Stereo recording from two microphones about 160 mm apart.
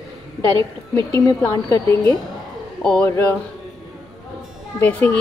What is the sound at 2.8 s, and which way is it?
Speech, 5° left (ahead or behind).